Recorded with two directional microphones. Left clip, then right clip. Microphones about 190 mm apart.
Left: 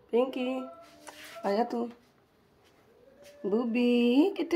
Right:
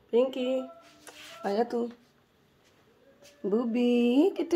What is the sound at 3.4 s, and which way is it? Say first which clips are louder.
Speech: right 1 dB; 20° right (ahead or behind).